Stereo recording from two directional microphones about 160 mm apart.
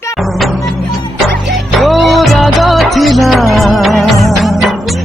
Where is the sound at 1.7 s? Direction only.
Centre (ahead or behind).